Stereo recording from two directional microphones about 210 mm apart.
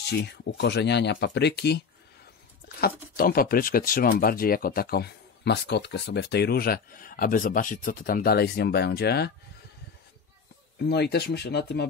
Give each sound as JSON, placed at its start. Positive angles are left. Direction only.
{"t": 0.1, "sound": "speech", "side_deg": 55}
{"t": 2.8, "sound": "speech", "side_deg": 45}
{"t": 10.8, "sound": "speech", "side_deg": 50}